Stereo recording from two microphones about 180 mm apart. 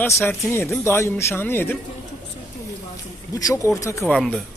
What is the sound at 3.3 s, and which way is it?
Speech, 20° left (ahead or behind).